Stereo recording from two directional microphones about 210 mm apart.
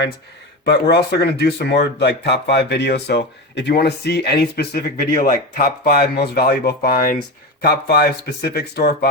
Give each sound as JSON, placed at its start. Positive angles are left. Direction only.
{"t": 0.6, "sound": "speech", "side_deg": 50}